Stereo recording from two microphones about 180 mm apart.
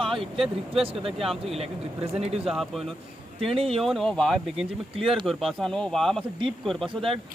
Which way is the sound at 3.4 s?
30° right (ahead or behind).